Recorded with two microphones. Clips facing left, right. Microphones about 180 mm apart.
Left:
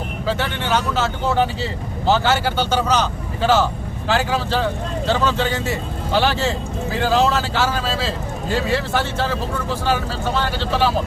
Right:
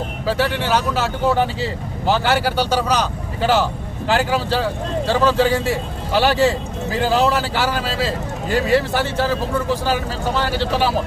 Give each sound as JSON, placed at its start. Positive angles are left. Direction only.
{"t": 0.3, "sound": "speech", "side_deg": -10}
{"t": 5.0, "sound": "speech", "side_deg": -35}
{"t": 6.1, "sound": "speech", "side_deg": -10}
{"t": 10.4, "sound": "speech", "side_deg": -10}